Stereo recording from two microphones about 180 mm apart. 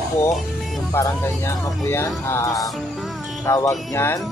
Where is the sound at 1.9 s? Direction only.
15° left (ahead or behind).